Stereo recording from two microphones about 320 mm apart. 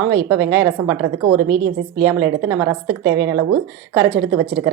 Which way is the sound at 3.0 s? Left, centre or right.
Right.